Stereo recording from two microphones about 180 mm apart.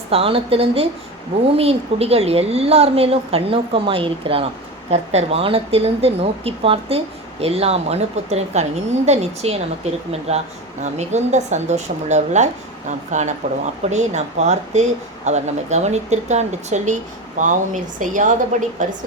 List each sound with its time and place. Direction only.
0.1 s a woman's voice: 30° right (ahead or behind)